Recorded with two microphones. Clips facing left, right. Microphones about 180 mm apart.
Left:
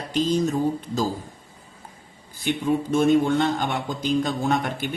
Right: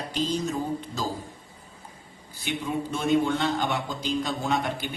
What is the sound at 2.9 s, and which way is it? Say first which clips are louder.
A man's voice: left 5 dB; 50° left (ahead or behind).